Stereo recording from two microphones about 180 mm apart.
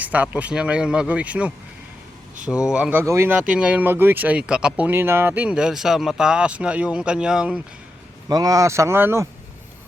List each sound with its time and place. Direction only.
0.0 s speech: 10° right (ahead or behind)
8.3 s speech: 20° right (ahead or behind)